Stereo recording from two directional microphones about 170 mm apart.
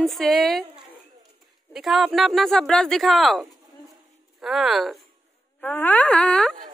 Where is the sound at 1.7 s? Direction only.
Centre (ahead or behind).